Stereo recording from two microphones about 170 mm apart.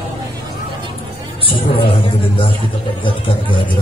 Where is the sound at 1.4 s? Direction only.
30° left (ahead or behind).